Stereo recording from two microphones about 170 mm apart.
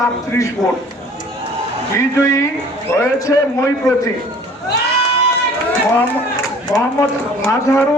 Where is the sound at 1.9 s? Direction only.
15° left (ahead or behind).